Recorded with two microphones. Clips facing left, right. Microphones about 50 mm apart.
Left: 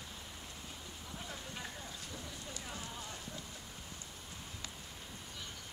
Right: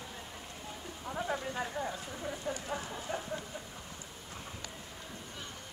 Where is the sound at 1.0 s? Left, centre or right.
Right.